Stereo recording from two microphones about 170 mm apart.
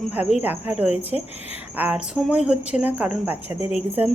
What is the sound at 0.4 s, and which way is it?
A woman's voice, 10° right (ahead or behind).